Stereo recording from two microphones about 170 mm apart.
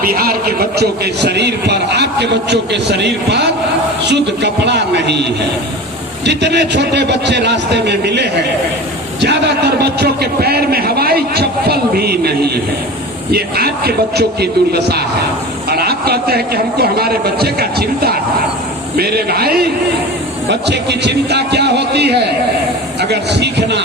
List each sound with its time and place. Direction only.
0.0 s a man's voice: 60° right (ahead or behind); by 5.2 s 85° right
6.2 s a man's voice: 90° right; by 19.6 s 65° right (ahead or behind)
20.5 s a man's voice: 85° right